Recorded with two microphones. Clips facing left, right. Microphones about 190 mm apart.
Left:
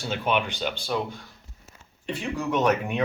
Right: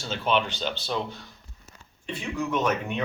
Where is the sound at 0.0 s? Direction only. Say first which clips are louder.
Even; 15° left (ahead or behind).